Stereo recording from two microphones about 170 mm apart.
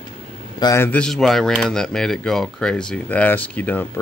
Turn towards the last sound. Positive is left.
turn(degrees=10)  # may be behind; listen again after turning